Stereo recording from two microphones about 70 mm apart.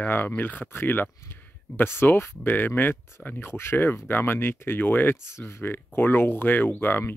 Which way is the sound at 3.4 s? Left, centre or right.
Left.